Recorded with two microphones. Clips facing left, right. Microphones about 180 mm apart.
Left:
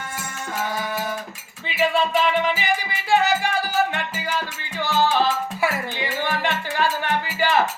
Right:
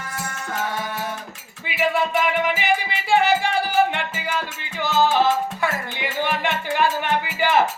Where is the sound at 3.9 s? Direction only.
20° right (ahead or behind).